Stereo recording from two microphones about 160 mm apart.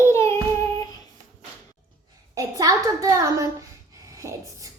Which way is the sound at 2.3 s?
20° right (ahead or behind).